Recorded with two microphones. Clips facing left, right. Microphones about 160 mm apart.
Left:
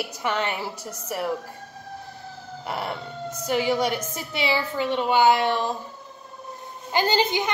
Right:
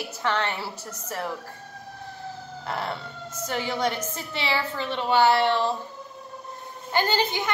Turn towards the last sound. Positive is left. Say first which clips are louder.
# left 3 dB
turn(degrees=15)  # may be behind; listen again after turning